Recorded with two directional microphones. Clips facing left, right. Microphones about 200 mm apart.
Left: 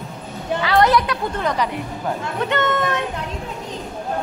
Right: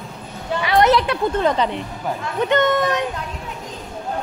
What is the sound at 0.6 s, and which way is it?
A woman's voice, 25° right (ahead or behind).